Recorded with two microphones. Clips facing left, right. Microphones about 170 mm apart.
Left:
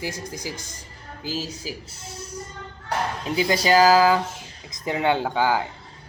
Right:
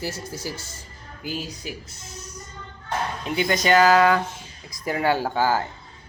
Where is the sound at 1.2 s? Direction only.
30° left (ahead or behind).